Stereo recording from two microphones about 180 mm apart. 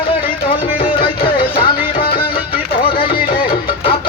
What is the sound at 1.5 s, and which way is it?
Music, 55° left (ahead or behind).